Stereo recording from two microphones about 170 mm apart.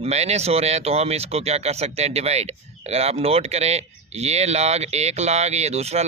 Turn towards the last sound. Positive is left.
turn(degrees=-40)  # may be behind; listen again after turning